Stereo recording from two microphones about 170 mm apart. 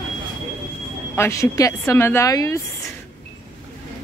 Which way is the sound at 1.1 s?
15° left (ahead or behind).